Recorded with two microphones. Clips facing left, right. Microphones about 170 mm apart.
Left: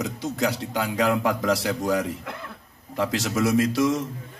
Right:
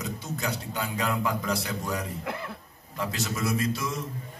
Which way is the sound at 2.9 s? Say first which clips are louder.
Left 7 dB; 85° left.